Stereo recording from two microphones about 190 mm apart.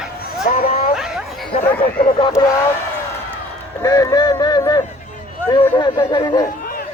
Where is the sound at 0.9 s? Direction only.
Centre (ahead or behind).